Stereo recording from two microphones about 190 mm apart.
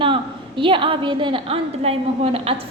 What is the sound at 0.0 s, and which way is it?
A woman's voice, 25° right (ahead or behind).